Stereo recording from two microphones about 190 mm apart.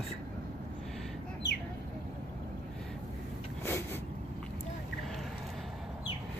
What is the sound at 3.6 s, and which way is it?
Vehicle, 10° left (ahead or behind).